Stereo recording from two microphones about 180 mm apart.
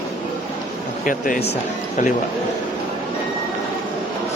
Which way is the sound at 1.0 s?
50° left (ahead or behind).